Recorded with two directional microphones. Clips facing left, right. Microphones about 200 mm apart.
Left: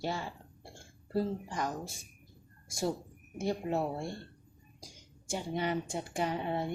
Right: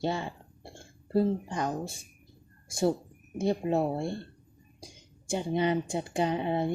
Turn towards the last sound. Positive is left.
turn(degrees=-20)  # may be behind; listen again after turning